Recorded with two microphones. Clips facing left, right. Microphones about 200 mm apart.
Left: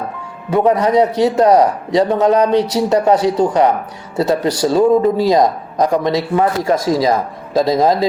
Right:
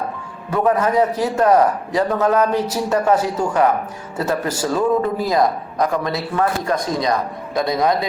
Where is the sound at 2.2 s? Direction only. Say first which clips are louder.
Left 3 dB; 20° left (ahead or behind).